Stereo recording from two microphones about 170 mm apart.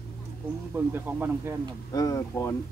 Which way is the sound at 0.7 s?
10° right (ahead or behind).